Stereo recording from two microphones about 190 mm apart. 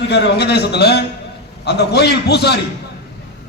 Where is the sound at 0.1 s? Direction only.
55° left (ahead or behind).